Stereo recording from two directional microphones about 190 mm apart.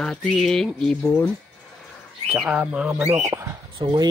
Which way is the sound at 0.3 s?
Centre (ahead or behind).